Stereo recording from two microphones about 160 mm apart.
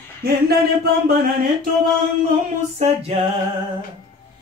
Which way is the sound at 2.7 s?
45° right (ahead or behind).